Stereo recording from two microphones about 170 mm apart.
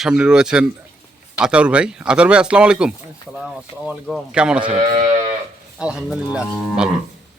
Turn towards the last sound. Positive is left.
turn(degrees=-5)  # may be behind; listen again after turning